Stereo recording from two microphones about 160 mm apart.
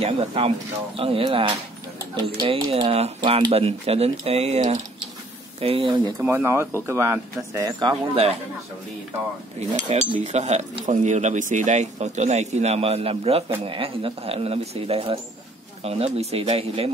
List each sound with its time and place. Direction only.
0.0 s speech: 40° right (ahead or behind)
5.6 s speech: 35° right (ahead or behind)
6.1 s speech: 15° right (ahead or behind)
8.1 s speech: 40° right (ahead or behind)
9.6 s speech: 50° right (ahead or behind)